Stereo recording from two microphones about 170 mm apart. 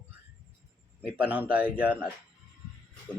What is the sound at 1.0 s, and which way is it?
A man's voice, 10° right (ahead or behind).